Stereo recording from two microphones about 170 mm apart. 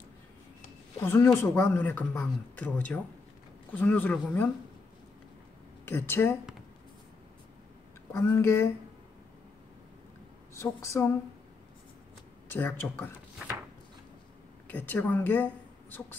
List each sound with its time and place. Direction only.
0.9 s speech: 15° left (ahead or behind)
5.9 s speech: 15° left (ahead or behind)
8.1 s speech: 15° left (ahead or behind)
10.5 s speech: 15° left (ahead or behind)
12.8 s speech: 10° left (ahead or behind)
14.7 s a woman's voice: 10° left (ahead or behind)